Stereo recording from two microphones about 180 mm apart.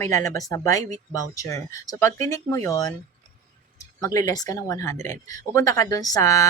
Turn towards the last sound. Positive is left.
turn(degrees=15)  # may be behind; listen again after turning